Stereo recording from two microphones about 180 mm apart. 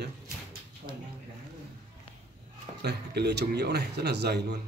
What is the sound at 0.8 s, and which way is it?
Speech, 55° right (ahead or behind).